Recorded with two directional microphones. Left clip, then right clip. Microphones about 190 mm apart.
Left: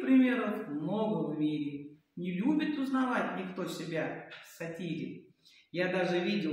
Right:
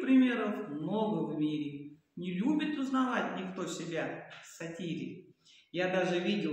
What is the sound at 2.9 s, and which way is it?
A man's voice, 5° right (ahead or behind).